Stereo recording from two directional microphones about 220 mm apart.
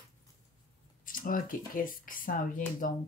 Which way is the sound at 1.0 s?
40° left (ahead or behind).